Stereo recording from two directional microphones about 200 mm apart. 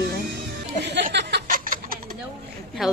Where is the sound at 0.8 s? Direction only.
60° right (ahead or behind); by 2.2 s 45° right (ahead or behind).